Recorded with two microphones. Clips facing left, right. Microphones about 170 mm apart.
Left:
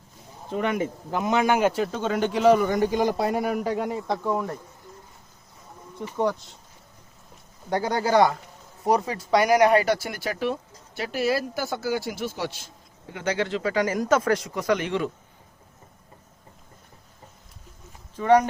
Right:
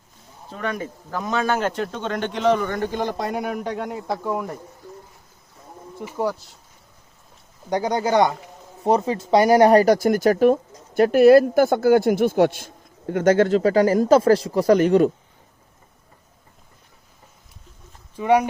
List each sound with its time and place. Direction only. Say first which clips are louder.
0.4 s speech: left 3 dB; 15° left (ahead or behind); by 4.5 s 10° right (ahead or behind)
6.0 s speech: even; 5° right (ahead or behind)
7.7 s speech: right 2 dB; 20° right (ahead or behind); by 15.1 s 40° right (ahead or behind)
18.2 s speech: even; 10° right (ahead or behind)